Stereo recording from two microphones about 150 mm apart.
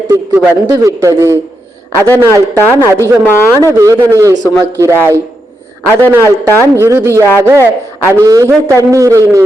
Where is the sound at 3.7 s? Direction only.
20° right (ahead or behind).